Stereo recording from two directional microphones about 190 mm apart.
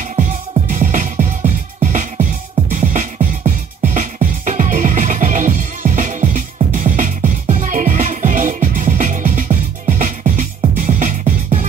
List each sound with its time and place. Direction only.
0.0 s music: 40° right (ahead or behind)